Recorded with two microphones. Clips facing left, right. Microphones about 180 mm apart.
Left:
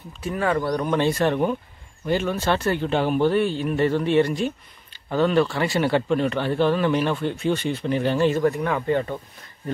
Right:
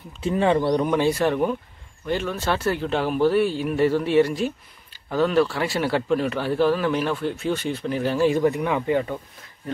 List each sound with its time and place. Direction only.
0.2 s a man's voice: 25° right (ahead or behind); by 9.2 s 5° right (ahead or behind)